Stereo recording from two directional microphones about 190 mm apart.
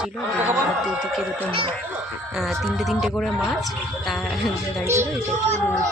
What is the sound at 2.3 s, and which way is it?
Speech, centre (ahead or behind).